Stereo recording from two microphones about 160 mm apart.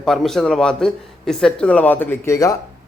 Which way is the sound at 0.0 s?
5° left (ahead or behind).